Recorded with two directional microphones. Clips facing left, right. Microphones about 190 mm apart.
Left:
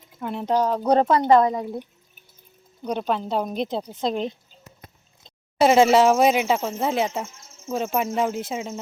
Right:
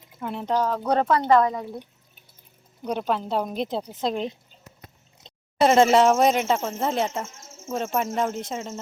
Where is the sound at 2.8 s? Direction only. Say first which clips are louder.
Left 1 dB; 5° right (ahead or behind).